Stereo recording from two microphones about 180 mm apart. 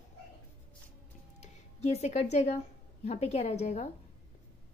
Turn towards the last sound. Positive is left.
turn(degrees=40)  # may be behind; listen again after turning